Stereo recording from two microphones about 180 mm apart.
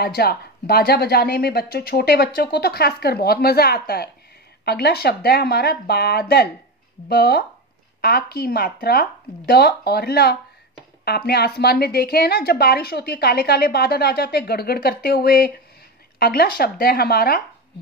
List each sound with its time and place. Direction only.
0.0 s a woman's voice: 60° left (ahead or behind)